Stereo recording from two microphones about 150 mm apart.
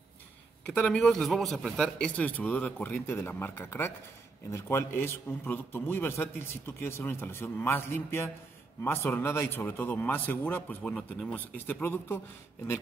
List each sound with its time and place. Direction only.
0.7 s a man's voice: 5° left (ahead or behind)